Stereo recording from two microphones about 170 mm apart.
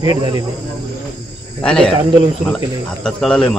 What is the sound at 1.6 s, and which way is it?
Speech, 5° left (ahead or behind).